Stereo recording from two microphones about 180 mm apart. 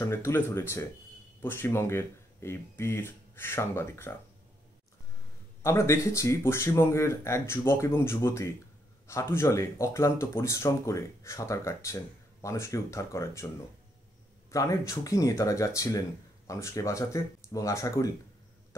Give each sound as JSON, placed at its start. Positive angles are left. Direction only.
{"t": 0.1, "sound": "speech", "side_deg": 15}
{"t": 5.6, "sound": "speech", "side_deg": 15}
{"t": 14.5, "sound": "speech", "side_deg": 20}